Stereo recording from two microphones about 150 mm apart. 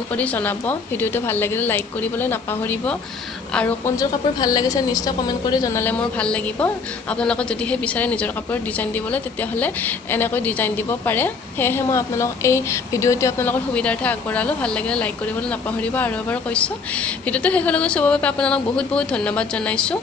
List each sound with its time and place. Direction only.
0.1 s a woman's voice: 10° left (ahead or behind)
3.9 s a woman's voice: 25° left (ahead or behind); by 20.0 s 5° left (ahead or behind)